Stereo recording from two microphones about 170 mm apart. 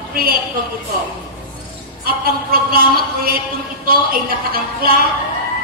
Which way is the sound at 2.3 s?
60° right (ahead or behind).